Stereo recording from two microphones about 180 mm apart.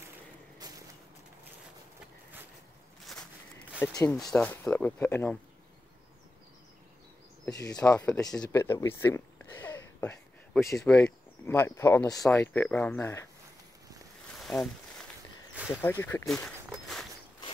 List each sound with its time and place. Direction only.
0.6 s a sound: 20° right (ahead or behind)
3.8 s speech: 15° left (ahead or behind)
7.5 s speech: 20° left (ahead or behind)
7.8 s speech: 10° left (ahead or behind)
8.3 s speech: 20° left (ahead or behind)
14.2 s boat: centre (ahead or behind)
15.5 s a sound: 5° right (ahead or behind)
15.8 s speech: 15° left (ahead or behind)